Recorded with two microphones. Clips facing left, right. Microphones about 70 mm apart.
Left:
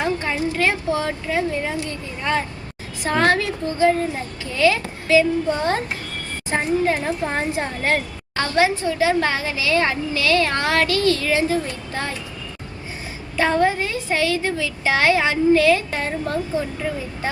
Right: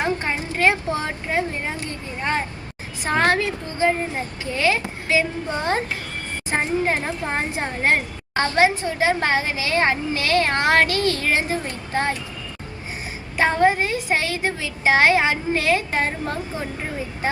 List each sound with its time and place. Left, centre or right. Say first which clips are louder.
0.0 s a woman's voice: left 2 dB; right
13.3 s a woman's voice: right 1 dB; right